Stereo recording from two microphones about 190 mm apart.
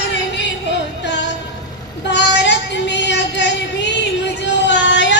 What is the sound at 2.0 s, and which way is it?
Child singing, 65° left (ahead or behind).